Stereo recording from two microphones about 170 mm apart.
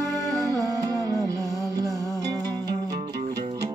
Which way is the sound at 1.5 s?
20° left (ahead or behind).